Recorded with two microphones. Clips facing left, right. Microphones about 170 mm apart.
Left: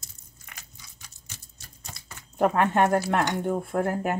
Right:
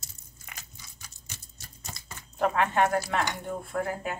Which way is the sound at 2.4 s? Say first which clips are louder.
Left 3 dB; 50° left (ahead or behind).